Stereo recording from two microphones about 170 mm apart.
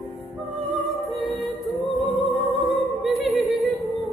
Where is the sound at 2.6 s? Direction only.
Centre (ahead or behind).